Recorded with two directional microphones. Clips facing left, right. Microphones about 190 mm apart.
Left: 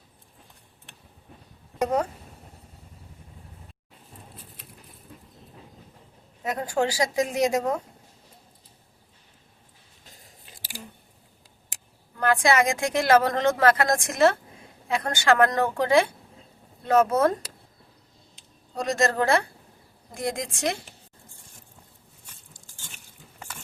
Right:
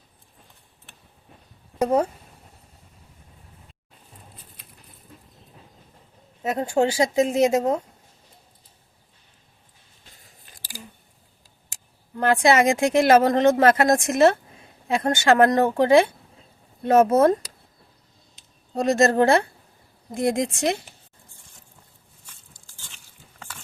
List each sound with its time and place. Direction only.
6.4 s speech: 25° right (ahead or behind)
12.1 s speech: 25° right (ahead or behind)
18.7 s speech: 25° right (ahead or behind)